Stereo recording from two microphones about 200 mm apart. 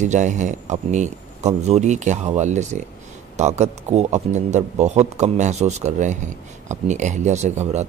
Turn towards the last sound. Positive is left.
turn(degrees=-35)  # may be behind; listen again after turning